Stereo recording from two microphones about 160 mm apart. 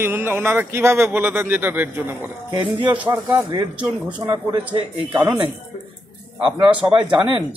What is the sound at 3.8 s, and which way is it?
Speech, 5° right (ahead or behind).